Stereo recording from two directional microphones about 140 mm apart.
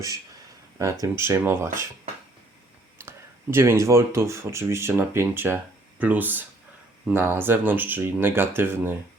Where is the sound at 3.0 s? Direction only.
20° right (ahead or behind).